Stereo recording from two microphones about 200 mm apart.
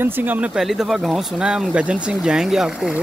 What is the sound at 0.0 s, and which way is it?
Speech, 5° right (ahead or behind).